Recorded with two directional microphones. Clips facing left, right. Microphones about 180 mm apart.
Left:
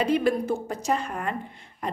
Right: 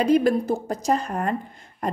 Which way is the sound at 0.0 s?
40° right (ahead or behind).